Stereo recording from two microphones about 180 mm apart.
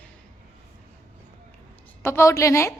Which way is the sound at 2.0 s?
15° left (ahead or behind).